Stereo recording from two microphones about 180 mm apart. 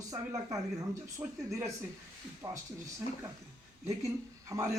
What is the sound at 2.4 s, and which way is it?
Speech, 25° right (ahead or behind).